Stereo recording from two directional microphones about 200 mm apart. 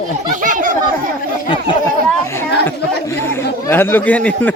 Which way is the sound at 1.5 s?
25° left (ahead or behind).